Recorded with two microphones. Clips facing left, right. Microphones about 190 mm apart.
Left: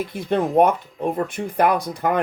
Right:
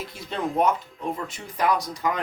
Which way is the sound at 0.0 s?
55° left (ahead or behind).